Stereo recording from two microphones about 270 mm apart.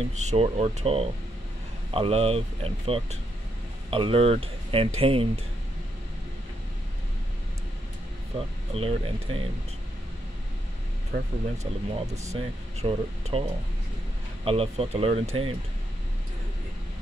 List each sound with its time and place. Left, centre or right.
0.0 s speech: right
8.4 s speech: right
11.6 s speech: centre